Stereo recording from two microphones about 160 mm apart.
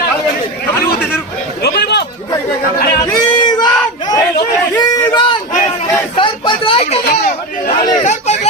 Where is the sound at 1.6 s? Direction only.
90° left.